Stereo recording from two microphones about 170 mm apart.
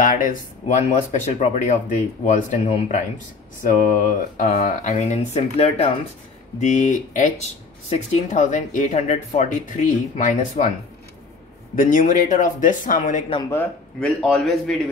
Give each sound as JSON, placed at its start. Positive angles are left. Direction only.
{"t": 0.0, "sound": "speech", "side_deg": 55}
{"t": 6.6, "sound": "speech", "side_deg": 45}
{"t": 11.7, "sound": "speech", "side_deg": 50}
{"t": 13.5, "sound": "a man's voice", "side_deg": 10}